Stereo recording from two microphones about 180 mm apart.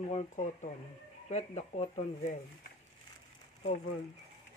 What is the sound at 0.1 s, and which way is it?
Speech, 40° left (ahead or behind).